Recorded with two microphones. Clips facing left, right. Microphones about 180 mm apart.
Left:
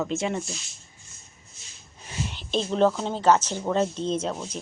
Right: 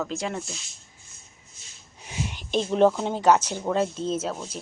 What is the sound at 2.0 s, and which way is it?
Speech, 10° right (ahead or behind).